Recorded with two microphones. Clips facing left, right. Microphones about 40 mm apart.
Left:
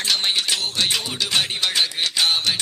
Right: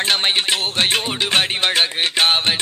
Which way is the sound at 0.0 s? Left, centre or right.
Right.